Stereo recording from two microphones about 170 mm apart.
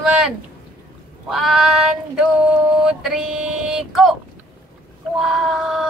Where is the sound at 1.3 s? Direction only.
Centre (ahead or behind).